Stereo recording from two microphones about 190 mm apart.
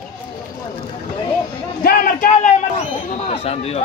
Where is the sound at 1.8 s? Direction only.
45° left (ahead or behind).